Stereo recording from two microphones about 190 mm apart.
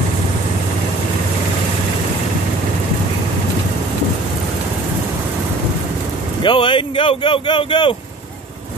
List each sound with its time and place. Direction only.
6.4 s speech: 25° left (ahead or behind)